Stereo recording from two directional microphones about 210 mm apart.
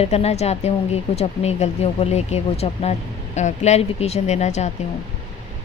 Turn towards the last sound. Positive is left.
turn(degrees=35)  # may be behind; listen again after turning